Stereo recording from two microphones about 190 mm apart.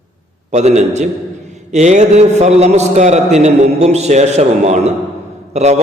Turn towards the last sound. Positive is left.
turn(degrees=-35)  # may be behind; listen again after turning